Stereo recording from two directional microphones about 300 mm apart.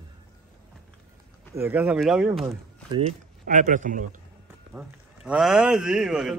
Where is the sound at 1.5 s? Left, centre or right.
Centre.